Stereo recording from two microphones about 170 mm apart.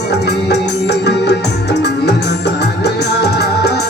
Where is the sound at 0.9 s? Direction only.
80° left.